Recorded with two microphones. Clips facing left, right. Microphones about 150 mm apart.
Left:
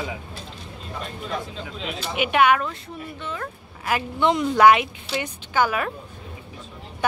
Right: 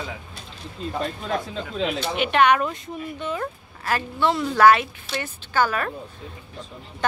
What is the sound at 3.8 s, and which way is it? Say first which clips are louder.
A woman's voice: left 1 dB; 15° left (ahead or behind).